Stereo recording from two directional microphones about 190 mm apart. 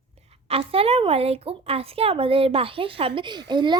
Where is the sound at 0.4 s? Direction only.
30° right (ahead or behind).